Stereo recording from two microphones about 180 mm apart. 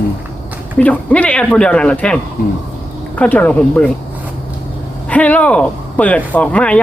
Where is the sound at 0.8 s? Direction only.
10° left (ahead or behind).